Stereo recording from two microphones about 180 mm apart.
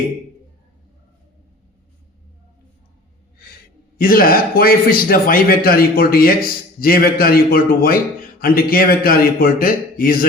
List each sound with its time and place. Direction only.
3.4 s gasp: 55° left (ahead or behind)
3.9 s a man's voice: 55° left (ahead or behind)